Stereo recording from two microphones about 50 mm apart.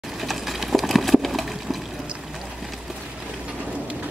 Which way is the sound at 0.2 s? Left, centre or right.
Centre.